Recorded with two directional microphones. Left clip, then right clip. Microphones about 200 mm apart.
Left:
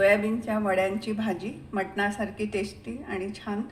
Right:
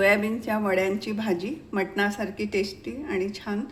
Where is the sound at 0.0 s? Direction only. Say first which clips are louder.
Even; 35° right (ahead or behind).